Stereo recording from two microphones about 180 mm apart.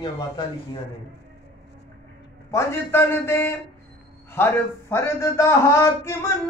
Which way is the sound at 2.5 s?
10° left (ahead or behind).